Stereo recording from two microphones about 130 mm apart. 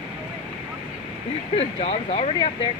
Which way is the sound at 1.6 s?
45° left (ahead or behind).